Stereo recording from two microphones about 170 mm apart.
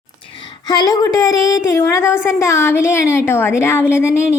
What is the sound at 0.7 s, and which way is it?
Speech, 20° left (ahead or behind).